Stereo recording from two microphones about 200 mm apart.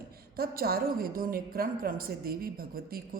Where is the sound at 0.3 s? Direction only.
50° right (ahead or behind).